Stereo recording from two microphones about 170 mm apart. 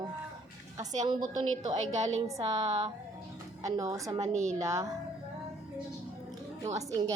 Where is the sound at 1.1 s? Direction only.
25° right (ahead or behind).